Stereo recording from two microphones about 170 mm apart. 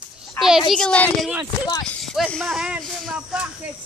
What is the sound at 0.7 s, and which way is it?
Speech, 5° left (ahead or behind).